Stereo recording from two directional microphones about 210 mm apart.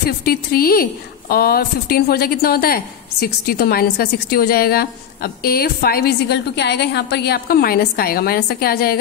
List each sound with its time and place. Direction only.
0.2 s a woman's voice: 45° left (ahead or behind)